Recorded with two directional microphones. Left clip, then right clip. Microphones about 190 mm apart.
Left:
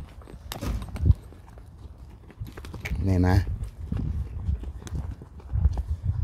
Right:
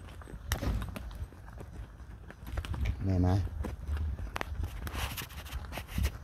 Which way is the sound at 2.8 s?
50° left (ahead or behind).